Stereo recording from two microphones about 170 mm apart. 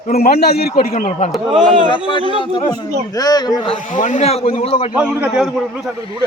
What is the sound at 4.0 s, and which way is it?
Speech, 45° left (ahead or behind).